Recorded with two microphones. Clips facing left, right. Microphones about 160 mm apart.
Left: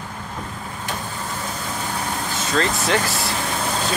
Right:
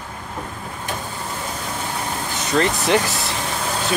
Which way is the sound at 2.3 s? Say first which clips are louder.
Right 3 dB; 20° right (ahead or behind).